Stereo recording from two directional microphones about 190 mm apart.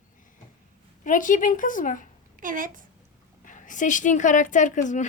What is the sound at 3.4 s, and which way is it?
A woman's voice, 40° left (ahead or behind).